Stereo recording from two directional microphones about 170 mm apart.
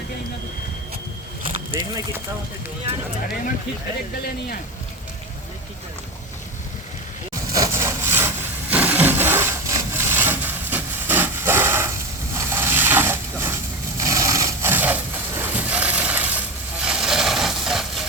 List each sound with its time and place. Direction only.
7.5 s sawing: 20° right (ahead or behind)
8.7 s wood: 10° right (ahead or behind)
12.3 s a sound: 15° right (ahead or behind)